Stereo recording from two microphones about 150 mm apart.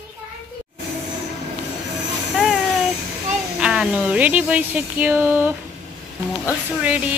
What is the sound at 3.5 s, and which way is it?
A woman's voice, 5° right (ahead or behind).